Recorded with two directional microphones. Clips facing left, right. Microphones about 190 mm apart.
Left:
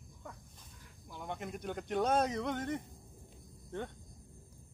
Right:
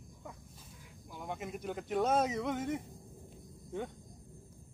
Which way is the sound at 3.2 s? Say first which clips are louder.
Right 4 dB; 5° right (ahead or behind).